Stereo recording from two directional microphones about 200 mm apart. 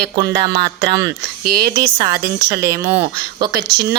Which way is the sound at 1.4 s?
50° right (ahead or behind).